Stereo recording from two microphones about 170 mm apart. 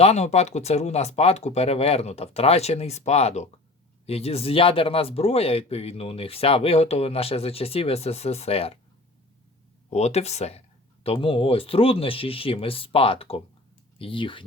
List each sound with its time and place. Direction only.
0.0 s speech: 40° left (ahead or behind)
9.9 s speech: 40° left (ahead or behind)